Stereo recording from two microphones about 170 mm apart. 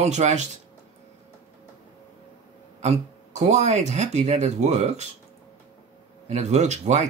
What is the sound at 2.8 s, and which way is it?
Speech, 40° right (ahead or behind).